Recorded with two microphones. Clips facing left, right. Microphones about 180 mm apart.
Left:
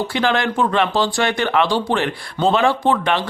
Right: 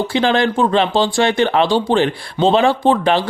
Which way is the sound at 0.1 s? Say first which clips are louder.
Right 4 dB; 30° right (ahead or behind).